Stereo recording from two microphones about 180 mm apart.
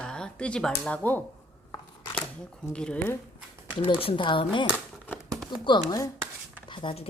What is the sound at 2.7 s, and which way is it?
Speech, 5° left (ahead or behind).